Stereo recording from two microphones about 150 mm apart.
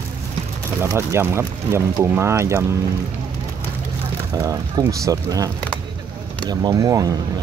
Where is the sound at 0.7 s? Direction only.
15° right (ahead or behind).